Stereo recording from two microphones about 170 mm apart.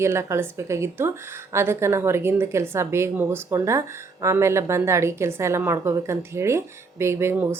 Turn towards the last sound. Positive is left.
turn(degrees=-15)  # may be behind; listen again after turning